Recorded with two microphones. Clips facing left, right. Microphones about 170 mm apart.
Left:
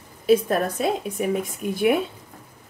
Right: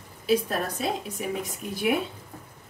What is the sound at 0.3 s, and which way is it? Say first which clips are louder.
A woman's voice: left 6 dB; 55° left (ahead or behind).